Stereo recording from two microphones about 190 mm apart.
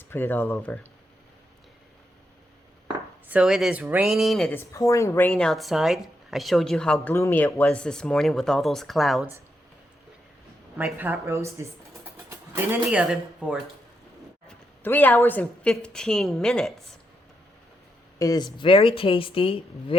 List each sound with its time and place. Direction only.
0.1 s speech: 10° left (ahead or behind)
2.8 s speech: 5° right (ahead or behind)
10.8 s speech: 10° right (ahead or behind)
14.4 s a woman's voice: 10° left (ahead or behind)
18.2 s speech: 20° left (ahead or behind)